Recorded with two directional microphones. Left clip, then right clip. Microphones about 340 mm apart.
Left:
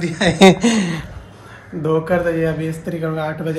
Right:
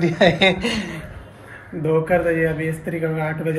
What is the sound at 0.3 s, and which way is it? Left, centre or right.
Speech, centre.